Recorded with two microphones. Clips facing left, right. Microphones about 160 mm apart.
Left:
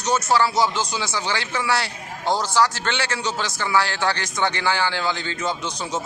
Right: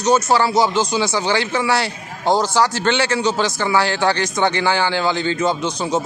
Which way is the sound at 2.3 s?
60° right (ahead or behind).